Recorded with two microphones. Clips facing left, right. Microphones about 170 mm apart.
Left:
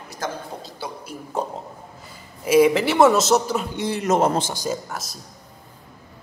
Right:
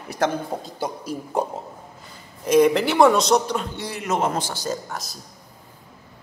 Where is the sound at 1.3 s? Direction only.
15° right (ahead or behind).